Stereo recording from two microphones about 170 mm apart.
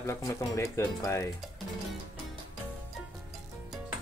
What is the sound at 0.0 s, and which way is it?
Speech, 15° left (ahead or behind).